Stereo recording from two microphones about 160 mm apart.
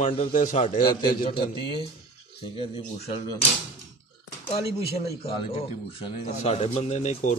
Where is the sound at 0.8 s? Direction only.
30° left (ahead or behind).